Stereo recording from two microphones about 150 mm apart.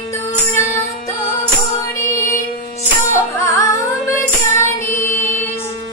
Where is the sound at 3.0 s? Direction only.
20° left (ahead or behind).